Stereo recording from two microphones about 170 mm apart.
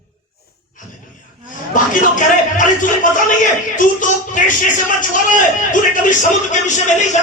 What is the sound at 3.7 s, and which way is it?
Speech, 50° left (ahead or behind).